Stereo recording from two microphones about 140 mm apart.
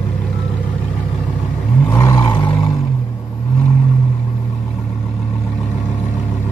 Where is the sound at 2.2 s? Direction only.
35° left (ahead or behind).